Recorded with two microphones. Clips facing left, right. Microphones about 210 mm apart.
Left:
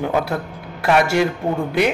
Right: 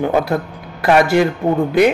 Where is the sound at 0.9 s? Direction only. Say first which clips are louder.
Right 4 dB; centre (ahead or behind).